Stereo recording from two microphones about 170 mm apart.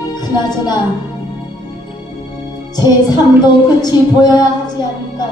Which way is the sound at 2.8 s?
25° left (ahead or behind).